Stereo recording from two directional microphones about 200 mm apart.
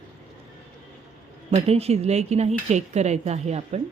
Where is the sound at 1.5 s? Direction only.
30° right (ahead or behind).